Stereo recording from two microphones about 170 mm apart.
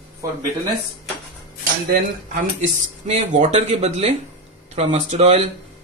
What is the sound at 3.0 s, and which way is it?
Speech, 45° right (ahead or behind).